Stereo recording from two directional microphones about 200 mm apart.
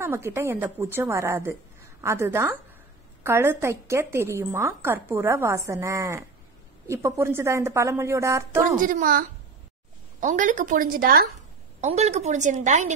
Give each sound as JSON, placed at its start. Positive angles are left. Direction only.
{"t": 0.0, "sound": "a woman's voice", "side_deg": -15}
{"t": 8.7, "sound": "a woman's voice", "side_deg": -40}
{"t": 10.2, "sound": "a woman's voice", "side_deg": -40}
{"t": 11.8, "sound": "a woman's voice", "side_deg": -35}